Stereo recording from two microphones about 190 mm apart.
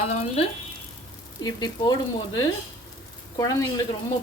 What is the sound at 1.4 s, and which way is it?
Speech, 20° left (ahead or behind).